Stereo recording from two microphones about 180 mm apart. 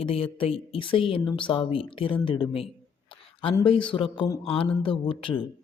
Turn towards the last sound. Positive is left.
turn(degrees=30)  # may be behind; listen again after turning